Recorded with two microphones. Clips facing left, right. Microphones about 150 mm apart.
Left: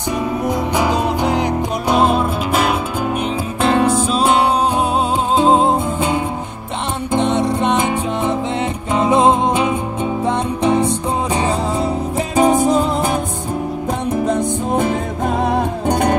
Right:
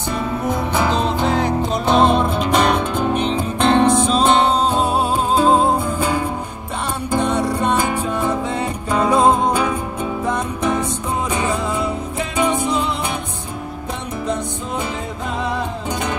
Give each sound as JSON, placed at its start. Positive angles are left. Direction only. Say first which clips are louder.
{"t": 0.5, "sound": "music", "louder": "left 1 dB", "side_deg": 15}
{"t": 5.3, "sound": "music", "louder": "left 2 dB", "side_deg": 20}
{"t": 14.2, "sound": "music", "louder": "left 3 dB", "side_deg": 50}